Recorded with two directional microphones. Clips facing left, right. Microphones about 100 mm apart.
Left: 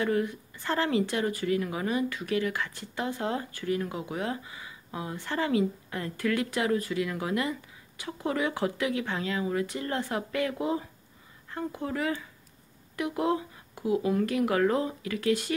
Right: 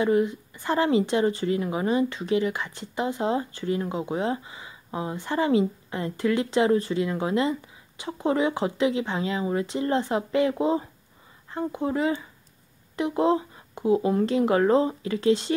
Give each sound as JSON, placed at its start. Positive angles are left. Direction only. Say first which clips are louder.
{"t": 0.0, "sound": "speech", "louder": "right 5 dB", "side_deg": -20}